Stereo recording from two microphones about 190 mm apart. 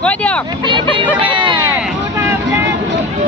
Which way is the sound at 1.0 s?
25° right (ahead or behind).